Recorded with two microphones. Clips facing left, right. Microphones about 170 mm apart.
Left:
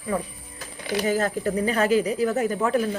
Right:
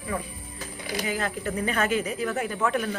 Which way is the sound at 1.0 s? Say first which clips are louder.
Left 6 dB; 40° left (ahead or behind).